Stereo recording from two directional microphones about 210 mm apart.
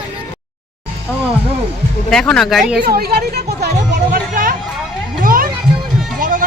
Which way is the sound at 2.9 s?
45° right (ahead or behind).